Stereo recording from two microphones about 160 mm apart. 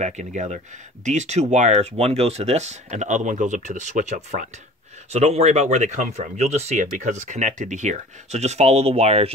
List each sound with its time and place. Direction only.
0.0 s speech: 50° right (ahead or behind)